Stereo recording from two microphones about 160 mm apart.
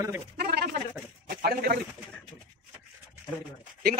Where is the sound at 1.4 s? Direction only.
65° right (ahead or behind).